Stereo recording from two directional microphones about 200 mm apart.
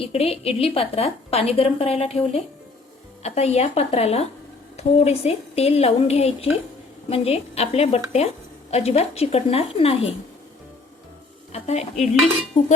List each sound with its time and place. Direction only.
0.0 s a woman's voice: 30° left (ahead or behind)
11.5 s a woman's voice: 35° left (ahead or behind)